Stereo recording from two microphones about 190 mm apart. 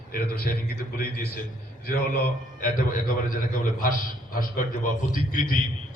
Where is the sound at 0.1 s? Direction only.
50° left (ahead or behind).